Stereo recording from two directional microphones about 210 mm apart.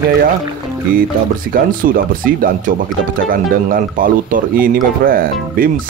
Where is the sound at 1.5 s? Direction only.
45° right (ahead or behind).